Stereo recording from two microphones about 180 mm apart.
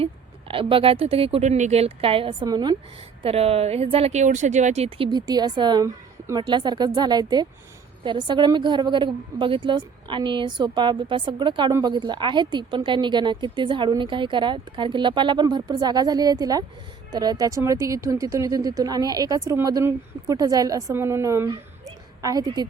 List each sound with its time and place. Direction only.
0.0 s speech: 30° right (ahead or behind)